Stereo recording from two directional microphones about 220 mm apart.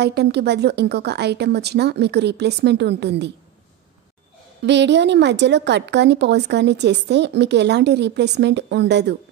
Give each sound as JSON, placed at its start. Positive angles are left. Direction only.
{"t": 0.0, "sound": "speech", "side_deg": -50}
{"t": 4.6, "sound": "speech", "side_deg": -50}